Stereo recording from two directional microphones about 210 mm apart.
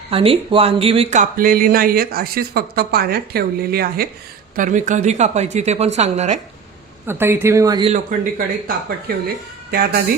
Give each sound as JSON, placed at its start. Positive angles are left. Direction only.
{"t": 0.1, "sound": "speech", "side_deg": -25}
{"t": 7.1, "sound": "speech", "side_deg": -10}
{"t": 7.9, "sound": "speech", "side_deg": -45}